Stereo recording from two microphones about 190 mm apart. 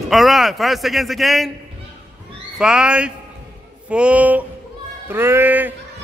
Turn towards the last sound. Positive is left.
turn(degrees=-10)  # may be behind; listen again after turning